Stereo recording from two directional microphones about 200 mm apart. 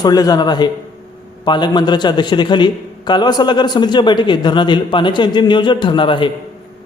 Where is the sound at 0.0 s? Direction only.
20° left (ahead or behind).